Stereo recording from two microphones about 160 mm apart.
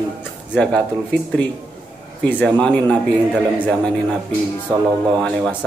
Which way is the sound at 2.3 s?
5° left (ahead or behind).